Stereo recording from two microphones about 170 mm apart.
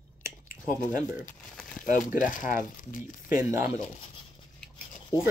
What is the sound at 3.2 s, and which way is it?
Speech, 15° right (ahead or behind).